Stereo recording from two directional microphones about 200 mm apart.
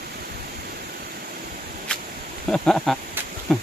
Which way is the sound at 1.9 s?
5° left (ahead or behind).